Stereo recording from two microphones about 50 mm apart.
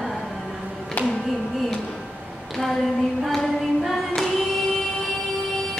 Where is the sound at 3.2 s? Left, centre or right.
Centre.